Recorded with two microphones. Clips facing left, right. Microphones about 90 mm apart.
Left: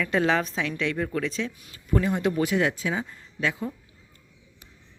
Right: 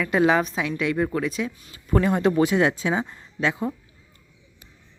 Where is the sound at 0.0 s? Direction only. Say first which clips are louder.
Right 4 dB; 10° right (ahead or behind).